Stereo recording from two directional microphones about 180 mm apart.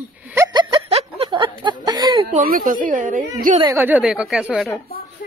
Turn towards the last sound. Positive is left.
turn(degrees=0)  # may be behind; listen again after turning